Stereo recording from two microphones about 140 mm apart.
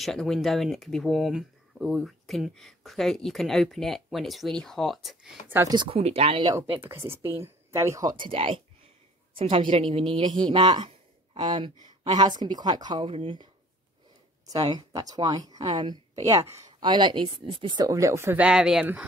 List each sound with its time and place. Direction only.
0.0 s speech: centre (ahead or behind)
5.7 s speech: 35° right (ahead or behind)
5.9 s speech: 45° right (ahead or behind)
6.8 s speech: 15° right (ahead or behind); by 13.5 s 40° right (ahead or behind)
14.5 s speech: 30° right (ahead or behind)
16.8 s speech: 35° right (ahead or behind); by 19.0 s 10° right (ahead or behind)